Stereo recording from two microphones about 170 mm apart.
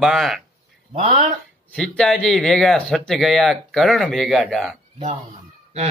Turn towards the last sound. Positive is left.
turn(degrees=-40)  # may be behind; listen again after turning